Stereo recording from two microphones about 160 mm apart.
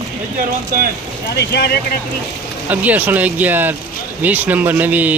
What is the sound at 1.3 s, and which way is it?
Speech, 90° left.